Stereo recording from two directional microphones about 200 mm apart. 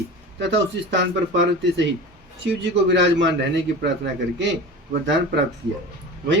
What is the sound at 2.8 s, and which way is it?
Speech, 65° right (ahead or behind).